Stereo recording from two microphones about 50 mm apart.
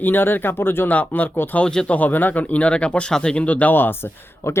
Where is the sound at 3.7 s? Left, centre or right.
Left.